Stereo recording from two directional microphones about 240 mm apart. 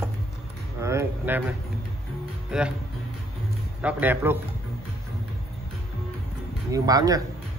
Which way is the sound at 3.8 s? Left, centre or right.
Centre.